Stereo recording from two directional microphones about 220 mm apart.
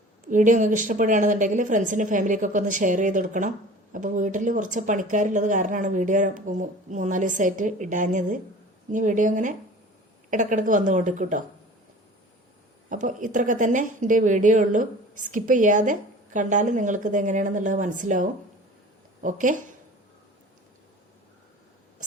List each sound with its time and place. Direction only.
0.3 s a woman's voice: 35° right (ahead or behind)
12.9 s a woman's voice: 35° right (ahead or behind)